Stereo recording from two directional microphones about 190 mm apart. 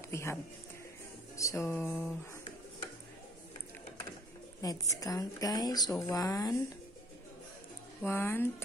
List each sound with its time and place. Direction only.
0.1 s speech: 15° left (ahead or behind)
1.3 s music: 15° left (ahead or behind)
4.6 s a woman's voice: 20° left (ahead or behind)
8.0 s music: 10° left (ahead or behind)